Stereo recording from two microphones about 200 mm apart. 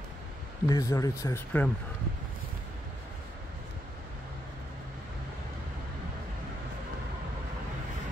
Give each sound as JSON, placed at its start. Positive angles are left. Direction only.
{"t": 0.7, "sound": "speech", "side_deg": 15}